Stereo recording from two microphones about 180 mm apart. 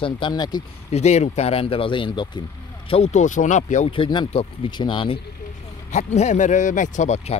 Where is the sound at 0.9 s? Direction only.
35° left (ahead or behind).